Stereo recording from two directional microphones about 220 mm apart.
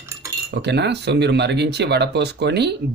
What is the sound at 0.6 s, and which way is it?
Speech, 50° right (ahead or behind).